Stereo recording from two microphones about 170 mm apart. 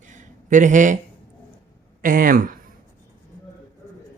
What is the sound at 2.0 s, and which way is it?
Speech, 55° right (ahead or behind).